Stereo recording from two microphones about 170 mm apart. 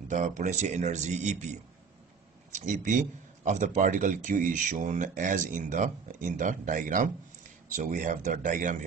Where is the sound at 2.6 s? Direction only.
45° right (ahead or behind).